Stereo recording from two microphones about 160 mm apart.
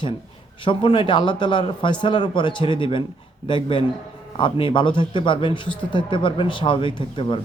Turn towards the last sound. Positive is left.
turn(degrees=30)  # may be behind; listen again after turning